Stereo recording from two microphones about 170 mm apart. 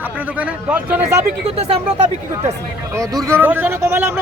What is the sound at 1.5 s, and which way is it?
Speech, 35° right (ahead or behind).